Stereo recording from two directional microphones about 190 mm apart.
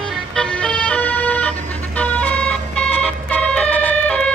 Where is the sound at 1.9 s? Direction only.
10° left (ahead or behind).